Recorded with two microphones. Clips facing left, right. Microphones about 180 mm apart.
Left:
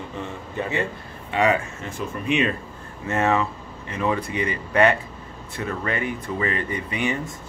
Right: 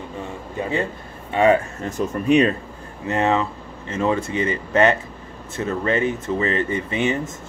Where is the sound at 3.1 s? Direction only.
20° right (ahead or behind).